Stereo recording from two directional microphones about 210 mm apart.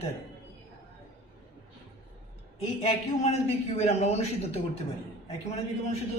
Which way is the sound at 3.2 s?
30° left (ahead or behind).